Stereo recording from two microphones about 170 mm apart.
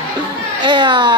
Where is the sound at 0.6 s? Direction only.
30° right (ahead or behind).